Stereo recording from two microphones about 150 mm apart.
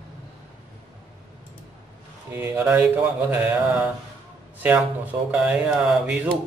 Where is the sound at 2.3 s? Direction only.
15° right (ahead or behind).